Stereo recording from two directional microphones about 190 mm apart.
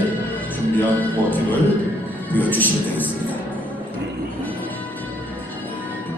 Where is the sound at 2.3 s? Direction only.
10° left (ahead or behind).